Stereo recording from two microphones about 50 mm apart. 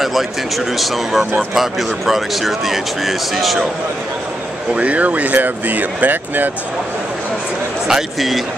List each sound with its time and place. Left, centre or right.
0.0 s speech: centre
4.7 s speech: right
7.9 s speech: centre